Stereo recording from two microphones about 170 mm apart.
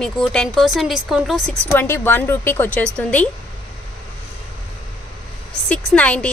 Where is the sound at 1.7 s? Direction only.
10° left (ahead or behind).